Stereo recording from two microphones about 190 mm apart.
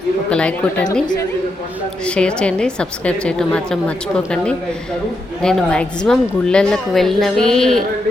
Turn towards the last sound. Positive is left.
turn(degrees=0)  # may be behind; listen again after turning